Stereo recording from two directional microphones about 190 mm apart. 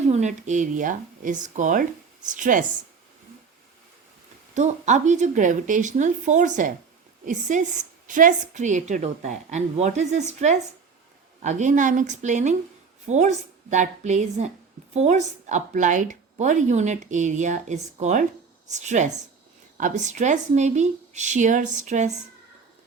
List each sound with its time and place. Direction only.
0.1 s a woman's voice: 40° right (ahead or behind)
4.5 s a woman's voice: 40° right (ahead or behind)